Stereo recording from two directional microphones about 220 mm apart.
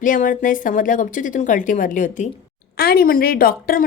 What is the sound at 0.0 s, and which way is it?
A woman's voice, 35° left (ahead or behind).